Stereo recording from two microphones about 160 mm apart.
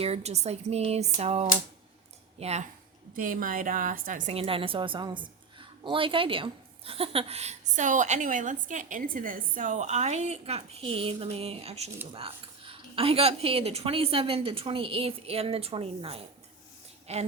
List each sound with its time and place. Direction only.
0.0 s a woman's voice: 40° right (ahead or behind)
3.2 s a woman's voice: 60° right (ahead or behind)
4.3 s a woman's voice: 35° right (ahead or behind)